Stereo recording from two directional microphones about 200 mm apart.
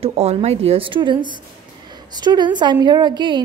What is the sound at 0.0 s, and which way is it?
A woman's voice, 30° right (ahead or behind).